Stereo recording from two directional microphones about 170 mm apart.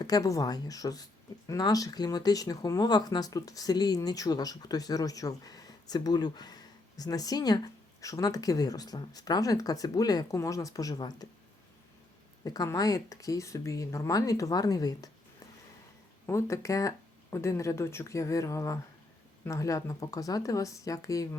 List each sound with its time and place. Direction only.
0.0 s speech: 20° left (ahead or behind)
12.5 s speech: 20° left (ahead or behind)
16.2 s speech: 15° left (ahead or behind)